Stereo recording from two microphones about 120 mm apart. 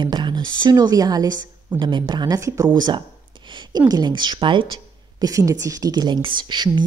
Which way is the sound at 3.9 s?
35° right (ahead or behind).